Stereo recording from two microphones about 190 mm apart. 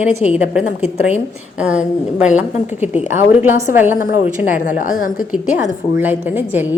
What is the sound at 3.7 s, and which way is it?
Speech, 10° right (ahead or behind).